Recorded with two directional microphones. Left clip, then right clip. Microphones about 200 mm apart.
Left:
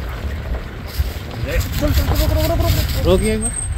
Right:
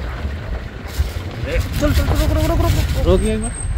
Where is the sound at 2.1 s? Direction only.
5° left (ahead or behind).